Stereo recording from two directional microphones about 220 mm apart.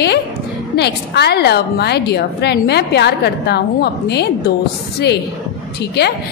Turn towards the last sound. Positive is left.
turn(degrees=50)  # may be behind; listen again after turning